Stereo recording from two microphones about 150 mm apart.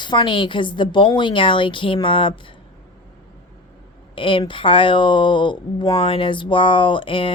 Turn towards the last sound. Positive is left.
turn(degrees=35)  # may be behind; listen again after turning